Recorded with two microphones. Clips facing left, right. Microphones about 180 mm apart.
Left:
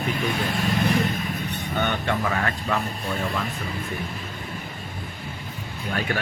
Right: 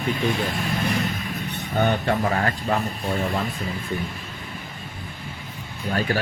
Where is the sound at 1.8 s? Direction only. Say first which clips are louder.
Right 4 dB; 35° right (ahead or behind).